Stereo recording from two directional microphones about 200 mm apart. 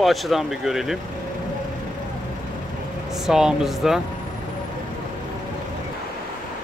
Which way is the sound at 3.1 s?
5° right (ahead or behind).